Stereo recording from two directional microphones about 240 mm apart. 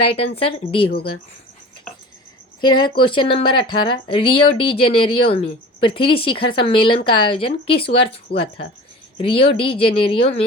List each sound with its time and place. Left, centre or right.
0.0 s speech: left
2.6 s speech: centre
9.3 s speech: left